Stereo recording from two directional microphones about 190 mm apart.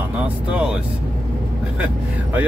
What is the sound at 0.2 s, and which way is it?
Speech, 5° right (ahead or behind).